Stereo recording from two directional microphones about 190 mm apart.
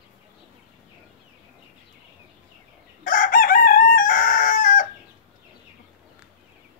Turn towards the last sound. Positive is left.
turn(degrees=45)  # may be behind; listen again after turning